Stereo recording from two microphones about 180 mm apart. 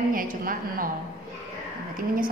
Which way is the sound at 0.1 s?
50° right (ahead or behind).